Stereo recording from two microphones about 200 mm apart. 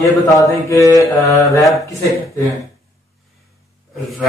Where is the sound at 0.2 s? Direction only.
15° left (ahead or behind).